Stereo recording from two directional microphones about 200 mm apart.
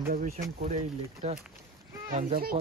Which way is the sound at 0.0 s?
45° right (ahead or behind).